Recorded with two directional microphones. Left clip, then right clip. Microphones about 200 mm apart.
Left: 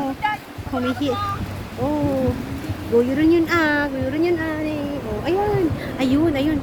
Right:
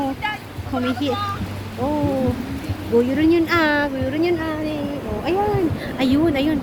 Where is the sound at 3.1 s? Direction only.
5° left (ahead or behind).